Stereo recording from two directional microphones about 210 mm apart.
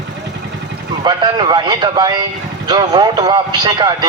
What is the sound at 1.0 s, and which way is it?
A man's voice, 20° right (ahead or behind).